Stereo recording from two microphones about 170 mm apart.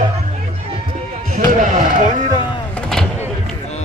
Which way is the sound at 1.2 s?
50° right (ahead or behind).